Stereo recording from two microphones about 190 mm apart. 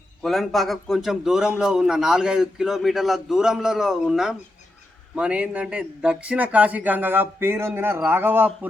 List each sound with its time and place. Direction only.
0.2 s a man's voice: centre (ahead or behind)